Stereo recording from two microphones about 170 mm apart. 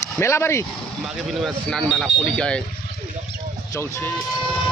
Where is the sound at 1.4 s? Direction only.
5° left (ahead or behind).